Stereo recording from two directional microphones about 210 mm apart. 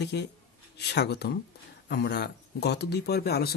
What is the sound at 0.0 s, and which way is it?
Speech, 55° left (ahead or behind).